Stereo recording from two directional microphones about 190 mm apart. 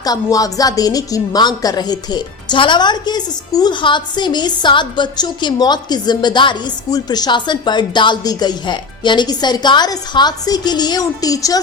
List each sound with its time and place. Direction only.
0.0 s a woman's voice: 20° left (ahead or behind)